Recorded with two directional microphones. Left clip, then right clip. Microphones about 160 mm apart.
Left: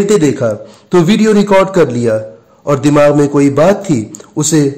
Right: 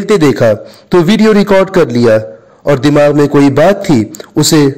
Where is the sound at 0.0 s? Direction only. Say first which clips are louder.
Right 3 dB; 30° right (ahead or behind).